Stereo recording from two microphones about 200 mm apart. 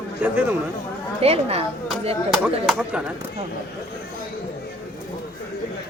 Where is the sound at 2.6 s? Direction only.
5° right (ahead or behind).